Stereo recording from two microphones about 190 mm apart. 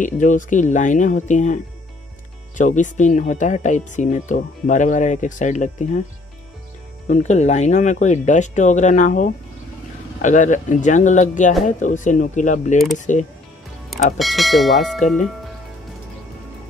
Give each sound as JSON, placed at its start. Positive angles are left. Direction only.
{"t": 0.0, "sound": "speech", "side_deg": 40}
{"t": 7.1, "sound": "speech", "side_deg": 35}
{"t": 14.1, "sound": "speech", "side_deg": 0}